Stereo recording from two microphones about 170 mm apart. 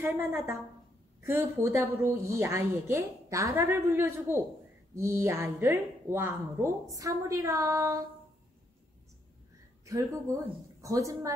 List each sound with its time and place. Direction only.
0.0 s a woman's voice: 15° right (ahead or behind)
9.8 s a woman's voice: 20° right (ahead or behind)